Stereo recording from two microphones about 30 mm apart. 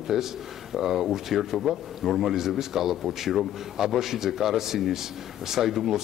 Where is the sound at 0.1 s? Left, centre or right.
Centre.